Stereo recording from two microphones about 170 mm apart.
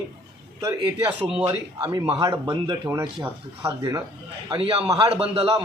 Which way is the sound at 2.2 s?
25° right (ahead or behind).